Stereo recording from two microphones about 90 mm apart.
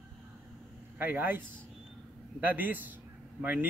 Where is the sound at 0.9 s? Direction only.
20° right (ahead or behind).